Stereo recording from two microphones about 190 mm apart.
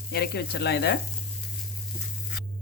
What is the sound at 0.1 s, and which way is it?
Speech, 60° left (ahead or behind).